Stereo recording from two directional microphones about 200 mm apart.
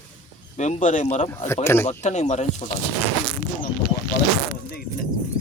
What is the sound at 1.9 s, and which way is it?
Speech, 35° left (ahead or behind).